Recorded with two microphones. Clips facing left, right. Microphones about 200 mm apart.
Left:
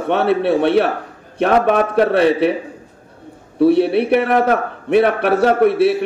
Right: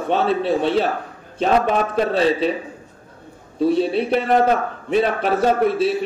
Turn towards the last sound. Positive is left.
turn(degrees=65)  # may be behind; listen again after turning